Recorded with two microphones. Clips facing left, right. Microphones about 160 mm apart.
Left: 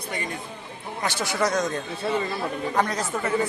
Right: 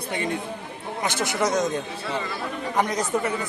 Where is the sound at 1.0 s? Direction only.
20° right (ahead or behind).